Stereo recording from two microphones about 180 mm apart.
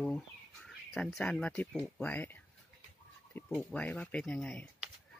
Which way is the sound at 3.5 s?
10° left (ahead or behind).